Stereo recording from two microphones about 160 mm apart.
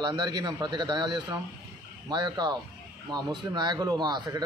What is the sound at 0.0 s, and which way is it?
Speech, 25° right (ahead or behind).